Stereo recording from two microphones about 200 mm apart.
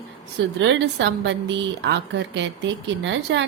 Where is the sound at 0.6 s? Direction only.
65° right (ahead or behind).